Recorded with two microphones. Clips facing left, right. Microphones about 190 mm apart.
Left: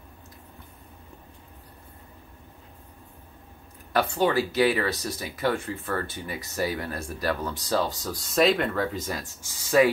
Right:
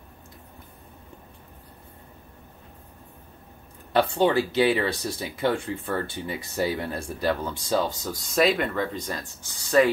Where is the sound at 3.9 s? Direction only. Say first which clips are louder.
Right 2 dB; 25° right (ahead or behind).